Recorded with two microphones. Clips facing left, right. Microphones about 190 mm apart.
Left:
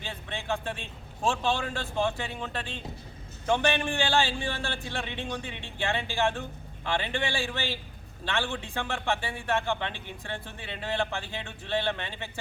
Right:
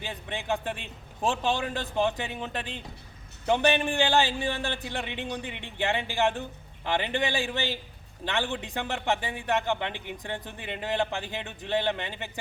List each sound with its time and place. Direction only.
0.0 s a man's voice: 15° right (ahead or behind)